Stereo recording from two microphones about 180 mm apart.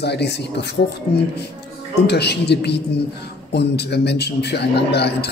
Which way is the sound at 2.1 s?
65° left (ahead or behind).